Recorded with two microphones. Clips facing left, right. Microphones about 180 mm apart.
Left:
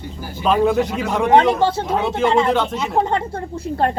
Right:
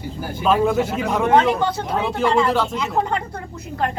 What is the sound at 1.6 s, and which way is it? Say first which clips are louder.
Speech: left 4 dB; 25° left (ahead or behind).